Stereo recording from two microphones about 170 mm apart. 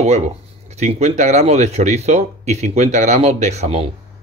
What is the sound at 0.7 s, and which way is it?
Speech, 40° right (ahead or behind).